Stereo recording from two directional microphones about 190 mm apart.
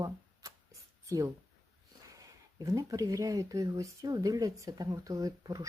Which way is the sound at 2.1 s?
20° right (ahead or behind).